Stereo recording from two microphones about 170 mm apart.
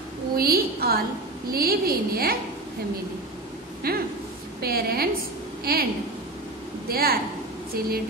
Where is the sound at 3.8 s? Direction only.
60° right (ahead or behind).